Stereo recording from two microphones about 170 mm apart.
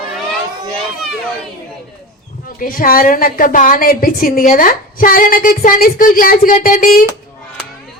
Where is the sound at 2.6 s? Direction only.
55° left (ahead or behind).